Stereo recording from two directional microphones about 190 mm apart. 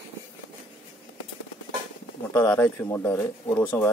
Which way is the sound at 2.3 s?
15° left (ahead or behind).